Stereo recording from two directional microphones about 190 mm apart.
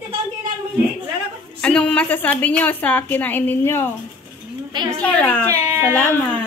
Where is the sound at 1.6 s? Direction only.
5° left (ahead or behind).